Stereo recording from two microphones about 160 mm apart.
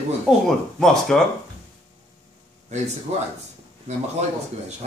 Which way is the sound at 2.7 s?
45° right (ahead or behind).